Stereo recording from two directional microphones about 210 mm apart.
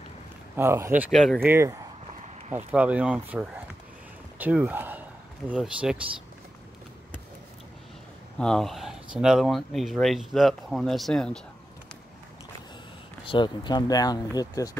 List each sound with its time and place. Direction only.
0.6 s speech: 10° right (ahead or behind)
1.1 s speech: 5° left (ahead or behind)
1.4 s speech: 10° right (ahead or behind)
8.4 s speech: 5° left (ahead or behind)
13.3 s speech: 20° left (ahead or behind)